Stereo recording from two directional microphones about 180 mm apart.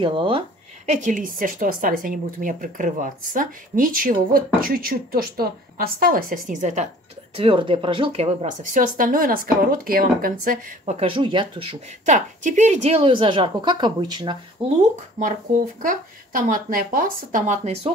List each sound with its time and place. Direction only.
0.0 s speech: 30° right (ahead or behind)
0.8 s a woman's voice: 45° right (ahead or behind)
7.3 s a woman's voice: 30° right (ahead or behind); by 11.0 s 50° right (ahead or behind)
11.0 s speech: 30° right (ahead or behind)
15.1 s a woman's voice: 45° right (ahead or behind)